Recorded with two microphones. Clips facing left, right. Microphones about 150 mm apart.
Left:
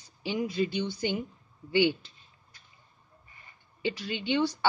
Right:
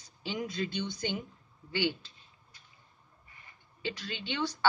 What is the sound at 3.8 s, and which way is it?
Speech, 15° left (ahead or behind).